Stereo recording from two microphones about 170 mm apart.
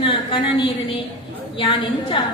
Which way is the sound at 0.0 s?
30° left (ahead or behind).